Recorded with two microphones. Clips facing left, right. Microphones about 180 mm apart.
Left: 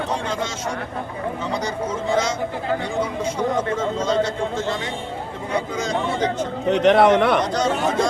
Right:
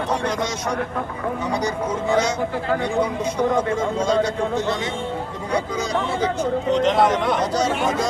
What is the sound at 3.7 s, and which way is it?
Speech, 10° right (ahead or behind).